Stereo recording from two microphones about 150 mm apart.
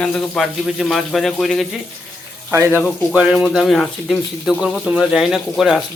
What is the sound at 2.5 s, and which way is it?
Speech, 20° right (ahead or behind).